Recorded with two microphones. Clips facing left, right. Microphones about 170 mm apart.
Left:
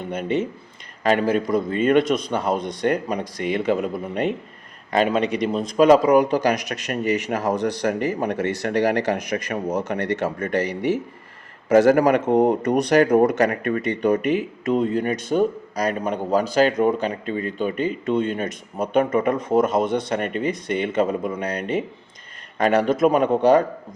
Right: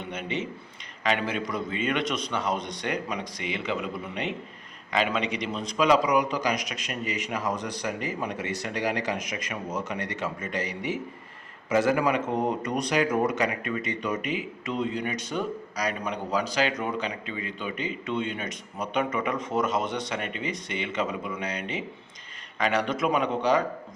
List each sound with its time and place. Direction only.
0.0 s a man's voice: 45° left (ahead or behind)
14.6 s a man's voice: 45° left (ahead or behind)